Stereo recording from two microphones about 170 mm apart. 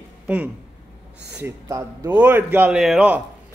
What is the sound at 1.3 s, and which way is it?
Speech, 15° right (ahead or behind).